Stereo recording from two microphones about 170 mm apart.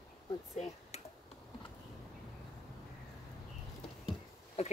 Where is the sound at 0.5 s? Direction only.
40° left (ahead or behind).